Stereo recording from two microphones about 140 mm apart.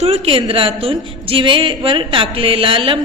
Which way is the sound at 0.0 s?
45° right (ahead or behind).